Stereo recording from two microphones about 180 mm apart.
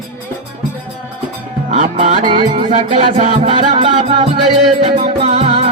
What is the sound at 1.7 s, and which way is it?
Music, 40° right (ahead or behind).